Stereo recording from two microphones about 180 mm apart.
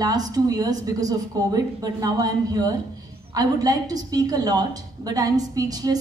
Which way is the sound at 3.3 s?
20° right (ahead or behind).